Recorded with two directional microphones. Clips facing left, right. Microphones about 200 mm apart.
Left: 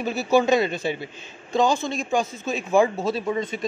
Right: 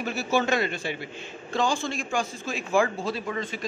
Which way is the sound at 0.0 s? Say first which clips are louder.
Left 5 dB; 15° left (ahead or behind).